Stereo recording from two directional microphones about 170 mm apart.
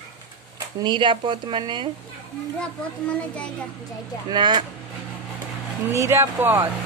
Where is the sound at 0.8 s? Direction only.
30° right (ahead or behind).